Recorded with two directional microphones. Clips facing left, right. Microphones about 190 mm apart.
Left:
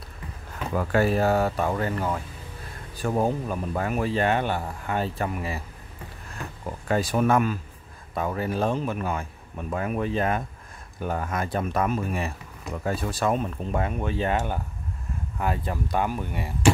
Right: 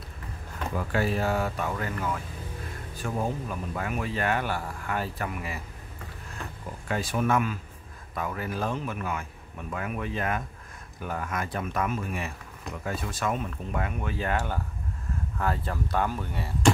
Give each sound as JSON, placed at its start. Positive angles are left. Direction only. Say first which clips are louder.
{"t": 0.7, "sound": "speech", "louder": "left 6 dB", "side_deg": 45}
{"t": 6.9, "sound": "speech", "louder": "left 4 dB", "side_deg": 40}